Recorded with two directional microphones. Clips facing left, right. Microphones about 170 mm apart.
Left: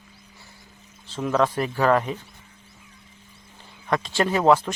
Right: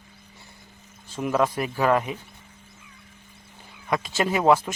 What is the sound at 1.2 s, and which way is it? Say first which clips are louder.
Speech: left 1 dB; 10° right (ahead or behind).